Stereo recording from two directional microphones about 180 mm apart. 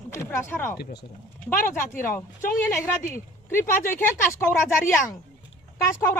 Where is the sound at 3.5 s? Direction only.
15° left (ahead or behind).